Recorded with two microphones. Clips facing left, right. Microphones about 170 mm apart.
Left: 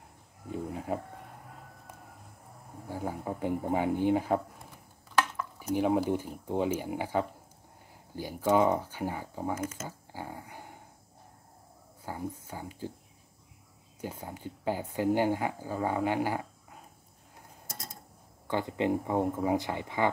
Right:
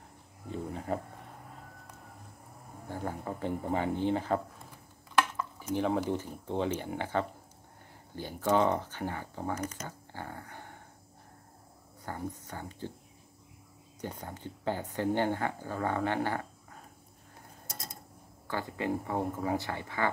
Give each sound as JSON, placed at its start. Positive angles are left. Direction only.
{"t": 0.5, "sound": "speech", "side_deg": 5}
{"t": 2.9, "sound": "speech", "side_deg": 10}
{"t": 5.8, "sound": "speech", "side_deg": 10}
{"t": 12.0, "sound": "speech", "side_deg": 10}
{"t": 14.0, "sound": "speech", "side_deg": 10}
{"t": 18.5, "sound": "speech", "side_deg": 20}